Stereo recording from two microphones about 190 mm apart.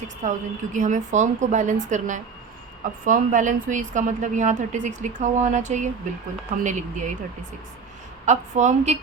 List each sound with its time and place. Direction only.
0.2 s a woman's voice: 40° right (ahead or behind)
8.2 s a woman's voice: 40° right (ahead or behind)